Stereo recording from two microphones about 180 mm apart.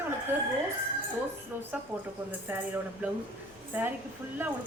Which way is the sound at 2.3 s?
10° right (ahead or behind).